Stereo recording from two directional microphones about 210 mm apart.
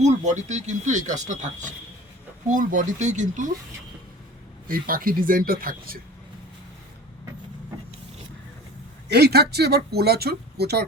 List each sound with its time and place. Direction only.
0.0 s speech: 35° right (ahead or behind)
4.7 s speech: 45° right (ahead or behind)
9.0 s speech: 50° right (ahead or behind)